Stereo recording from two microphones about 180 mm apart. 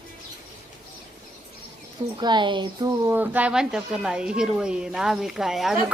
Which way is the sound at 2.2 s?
25° right (ahead or behind).